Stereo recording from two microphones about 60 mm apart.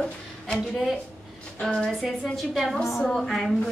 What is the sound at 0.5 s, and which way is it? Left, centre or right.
Speech, centre.